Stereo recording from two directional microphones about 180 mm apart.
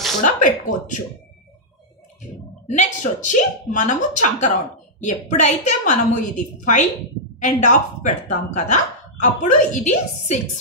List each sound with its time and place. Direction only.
0.2 s speech: 45° left (ahead or behind)
2.7 s speech: 45° left (ahead or behind)